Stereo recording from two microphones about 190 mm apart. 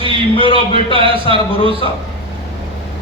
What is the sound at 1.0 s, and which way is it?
Speech, 30° right (ahead or behind).